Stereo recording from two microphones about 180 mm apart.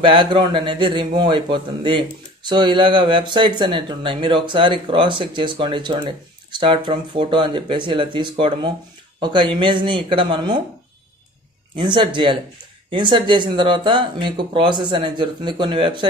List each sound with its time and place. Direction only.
0.0 s a man's voice: 25° right (ahead or behind)
11.7 s a man's voice: 25° right (ahead or behind)